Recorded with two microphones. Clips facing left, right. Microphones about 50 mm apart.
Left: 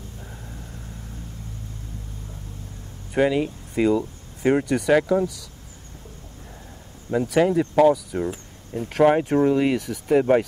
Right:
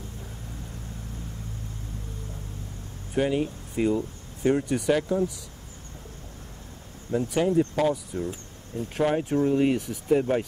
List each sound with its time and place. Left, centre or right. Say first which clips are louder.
3.2 s speech: left 4 dB; left
4.4 s speech: left 4 dB; left
7.1 s speech: left 5 dB; left
8.2 s speech: left 5 dB; left